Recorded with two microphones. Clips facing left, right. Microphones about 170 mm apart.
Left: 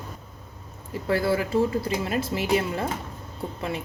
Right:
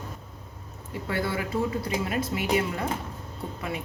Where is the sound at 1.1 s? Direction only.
35° left (ahead or behind).